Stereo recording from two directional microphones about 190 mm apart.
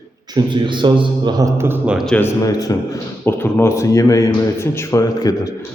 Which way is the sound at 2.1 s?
15° left (ahead or behind).